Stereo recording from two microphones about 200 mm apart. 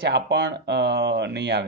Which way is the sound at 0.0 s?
55° right (ahead or behind).